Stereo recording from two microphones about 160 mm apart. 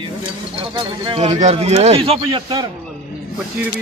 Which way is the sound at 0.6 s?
30° right (ahead or behind).